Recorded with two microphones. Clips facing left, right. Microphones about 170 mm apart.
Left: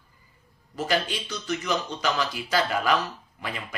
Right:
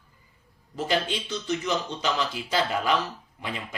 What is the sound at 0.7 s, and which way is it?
Speech, 25° right (ahead or behind).